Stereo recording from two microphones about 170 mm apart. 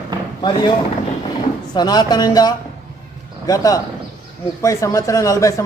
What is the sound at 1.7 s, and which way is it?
A man's voice, 25° left (ahead or behind).